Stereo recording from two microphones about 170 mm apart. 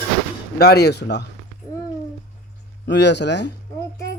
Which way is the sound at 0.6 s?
70° left (ahead or behind).